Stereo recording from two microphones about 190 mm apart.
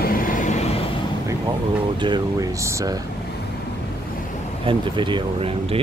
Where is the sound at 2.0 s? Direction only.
25° right (ahead or behind).